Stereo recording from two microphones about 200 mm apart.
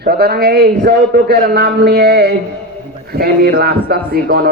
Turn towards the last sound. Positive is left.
turn(degrees=-50)  # may be behind; listen again after turning